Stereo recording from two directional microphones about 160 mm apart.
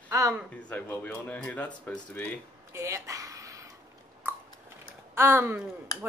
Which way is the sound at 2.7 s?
20° right (ahead or behind).